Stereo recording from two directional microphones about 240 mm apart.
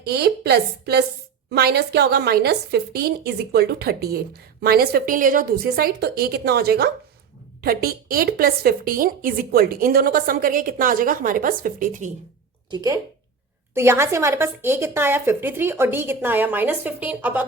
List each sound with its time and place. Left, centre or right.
0.0 s a woman's voice: right
12.7 s a woman's voice: centre